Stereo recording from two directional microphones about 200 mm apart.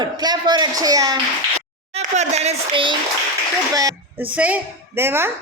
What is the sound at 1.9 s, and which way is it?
Speech, 35° right (ahead or behind).